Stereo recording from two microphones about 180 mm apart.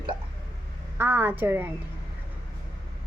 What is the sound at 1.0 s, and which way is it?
Speech, 10° right (ahead or behind).